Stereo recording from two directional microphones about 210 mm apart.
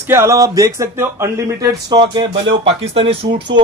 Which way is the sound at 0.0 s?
10° right (ahead or behind).